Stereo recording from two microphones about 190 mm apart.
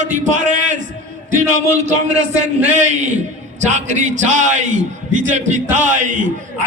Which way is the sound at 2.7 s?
40° right (ahead or behind).